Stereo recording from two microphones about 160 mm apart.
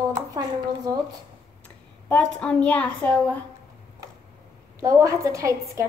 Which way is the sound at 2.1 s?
5° left (ahead or behind).